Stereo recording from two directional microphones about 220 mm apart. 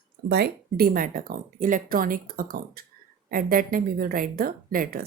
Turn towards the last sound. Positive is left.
turn(degrees=-40)  # may be behind; listen again after turning